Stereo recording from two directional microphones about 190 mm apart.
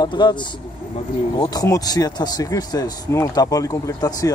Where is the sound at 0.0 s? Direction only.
25° left (ahead or behind).